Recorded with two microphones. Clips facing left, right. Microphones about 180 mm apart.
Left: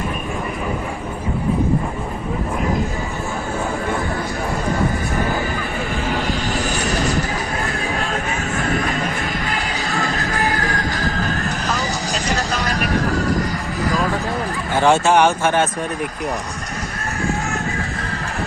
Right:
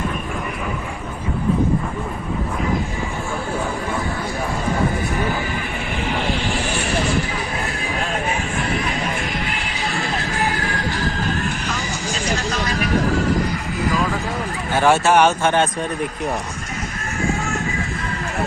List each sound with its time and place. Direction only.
6.1 s vehicle: 40° left (ahead or behind)
8.5 s music: 45° left (ahead or behind)
14.8 s speech: 15° left (ahead or behind)